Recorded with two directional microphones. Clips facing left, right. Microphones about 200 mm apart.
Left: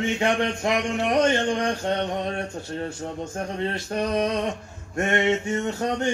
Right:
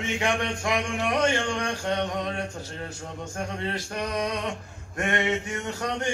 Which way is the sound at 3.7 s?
30° left (ahead or behind).